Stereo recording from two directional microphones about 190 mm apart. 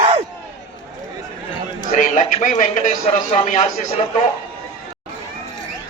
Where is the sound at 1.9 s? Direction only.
40° left (ahead or behind).